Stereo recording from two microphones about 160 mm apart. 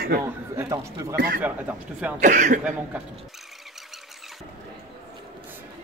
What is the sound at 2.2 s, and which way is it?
Speech, 50° right (ahead or behind).